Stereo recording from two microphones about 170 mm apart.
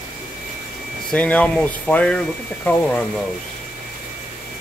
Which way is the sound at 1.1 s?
10° left (ahead or behind).